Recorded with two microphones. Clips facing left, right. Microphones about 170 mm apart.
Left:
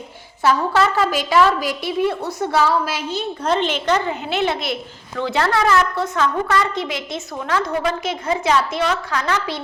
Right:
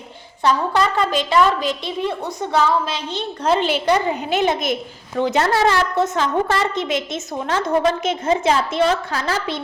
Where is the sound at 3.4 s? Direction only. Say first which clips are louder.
Right 2 dB; 5° right (ahead or behind).